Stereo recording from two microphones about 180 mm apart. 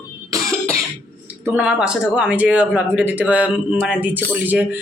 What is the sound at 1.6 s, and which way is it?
Speech, 5° right (ahead or behind).